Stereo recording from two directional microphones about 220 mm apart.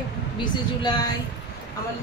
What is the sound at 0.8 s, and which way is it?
Speech, 20° left (ahead or behind).